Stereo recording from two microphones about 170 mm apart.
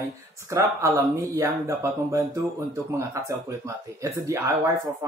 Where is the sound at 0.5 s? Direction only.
15° right (ahead or behind).